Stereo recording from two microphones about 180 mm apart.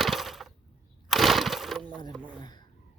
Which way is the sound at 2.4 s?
25° left (ahead or behind).